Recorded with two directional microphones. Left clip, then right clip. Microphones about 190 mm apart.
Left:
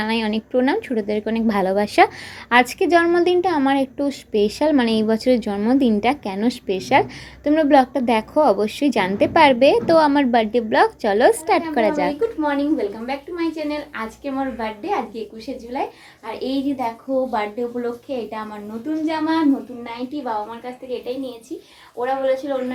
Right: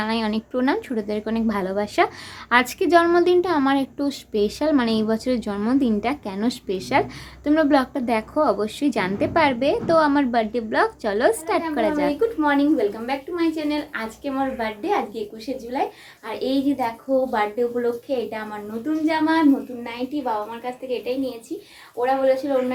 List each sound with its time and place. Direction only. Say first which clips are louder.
0.0 s a woman's voice: left 2 dB; 10° left (ahead or behind)
2.5 s a woman's voice: left 2 dB; 10° left (ahead or behind)
12.4 s a woman's voice: right 3 dB; centre (ahead or behind)